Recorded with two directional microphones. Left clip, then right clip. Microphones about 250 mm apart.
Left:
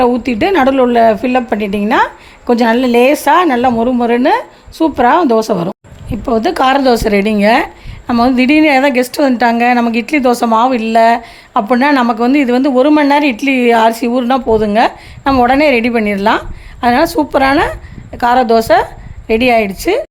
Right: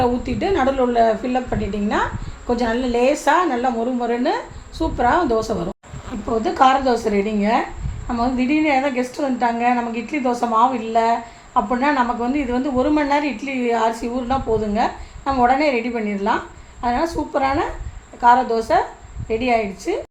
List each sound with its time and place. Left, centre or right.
0.0 s a woman's voice: left